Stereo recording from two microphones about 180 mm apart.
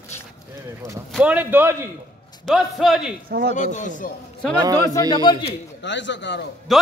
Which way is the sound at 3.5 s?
45° left (ahead or behind).